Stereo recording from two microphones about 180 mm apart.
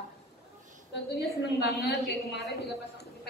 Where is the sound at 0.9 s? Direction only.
70° left (ahead or behind).